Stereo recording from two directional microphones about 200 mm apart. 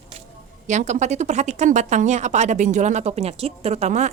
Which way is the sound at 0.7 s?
35° right (ahead or behind).